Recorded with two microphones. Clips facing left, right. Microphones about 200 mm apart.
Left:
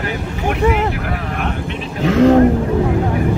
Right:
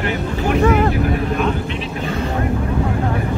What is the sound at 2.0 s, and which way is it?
Vehicle, 90° left.